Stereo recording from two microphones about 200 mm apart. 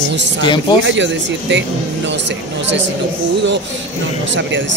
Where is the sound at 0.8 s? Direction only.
65° right (ahead or behind).